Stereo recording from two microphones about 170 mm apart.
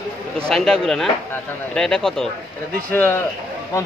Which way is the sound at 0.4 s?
5° left (ahead or behind).